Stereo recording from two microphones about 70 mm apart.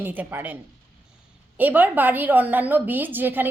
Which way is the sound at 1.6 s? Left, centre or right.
Right.